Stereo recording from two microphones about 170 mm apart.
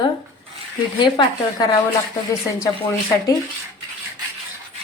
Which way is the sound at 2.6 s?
20° left (ahead or behind).